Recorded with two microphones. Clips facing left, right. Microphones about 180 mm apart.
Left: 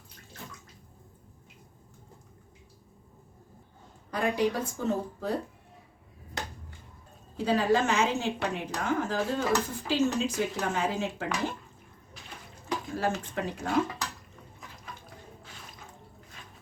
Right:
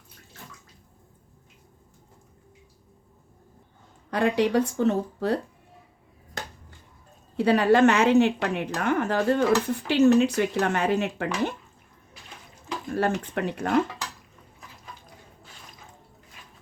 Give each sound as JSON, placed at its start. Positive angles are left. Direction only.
{"t": 4.1, "sound": "a woman's voice", "side_deg": -75}
{"t": 7.3, "sound": "a woman's voice", "side_deg": -70}
{"t": 12.9, "sound": "speech", "side_deg": -65}